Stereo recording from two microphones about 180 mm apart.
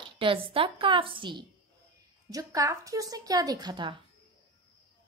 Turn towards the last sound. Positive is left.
turn(degrees=-25)  # may be behind; listen again after turning